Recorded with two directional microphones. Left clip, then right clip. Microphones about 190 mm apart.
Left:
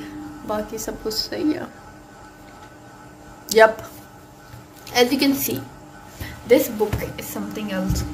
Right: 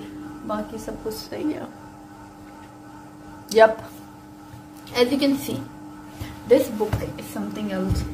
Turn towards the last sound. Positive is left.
turn(degrees=0)  # may be behind; listen again after turning